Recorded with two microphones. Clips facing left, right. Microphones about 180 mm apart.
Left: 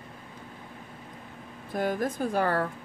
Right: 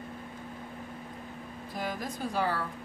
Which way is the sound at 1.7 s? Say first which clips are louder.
Left 8 dB; 55° left (ahead or behind).